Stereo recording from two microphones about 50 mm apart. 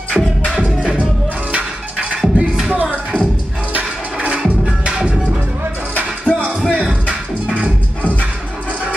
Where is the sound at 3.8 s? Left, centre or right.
Right.